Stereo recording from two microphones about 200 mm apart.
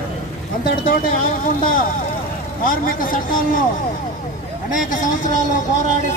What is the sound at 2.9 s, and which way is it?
Speech, 45° left (ahead or behind).